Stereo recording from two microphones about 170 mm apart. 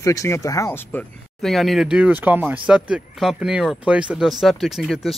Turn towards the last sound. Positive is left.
turn(degrees=0)  # may be behind; listen again after turning